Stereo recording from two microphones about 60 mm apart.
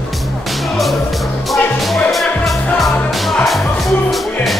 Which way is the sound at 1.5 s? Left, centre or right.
Centre.